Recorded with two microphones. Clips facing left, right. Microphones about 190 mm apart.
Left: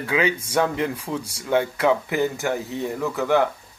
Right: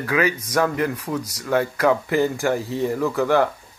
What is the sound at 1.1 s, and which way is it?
Speech, 5° right (ahead or behind).